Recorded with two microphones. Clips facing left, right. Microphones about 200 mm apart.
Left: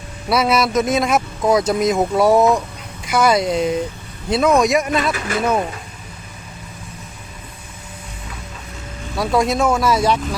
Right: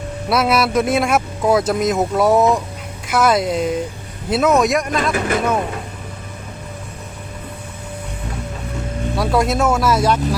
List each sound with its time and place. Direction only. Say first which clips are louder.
0.3 s speech: even; centre (ahead or behind)
5.1 s speech: right 5 dB; 50° right (ahead or behind)
9.1 s speech: even; centre (ahead or behind)